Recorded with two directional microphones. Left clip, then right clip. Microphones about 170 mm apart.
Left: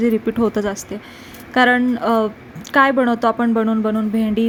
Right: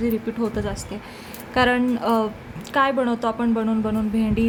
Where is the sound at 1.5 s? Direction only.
15° left (ahead or behind).